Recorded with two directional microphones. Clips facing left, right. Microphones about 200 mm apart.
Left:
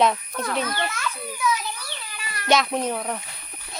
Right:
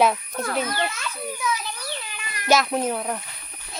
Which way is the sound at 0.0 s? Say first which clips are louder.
Right 1 dB; 5° right (ahead or behind).